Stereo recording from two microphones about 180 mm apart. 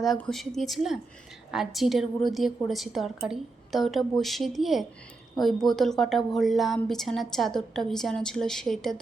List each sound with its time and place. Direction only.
0.0 s a woman's voice: centre (ahead or behind)